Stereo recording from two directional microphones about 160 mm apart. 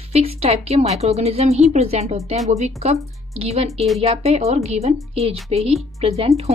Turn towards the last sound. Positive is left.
turn(degrees=-40)  # may be behind; listen again after turning